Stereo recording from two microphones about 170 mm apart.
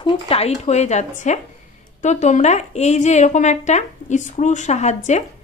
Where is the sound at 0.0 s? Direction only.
35° left (ahead or behind).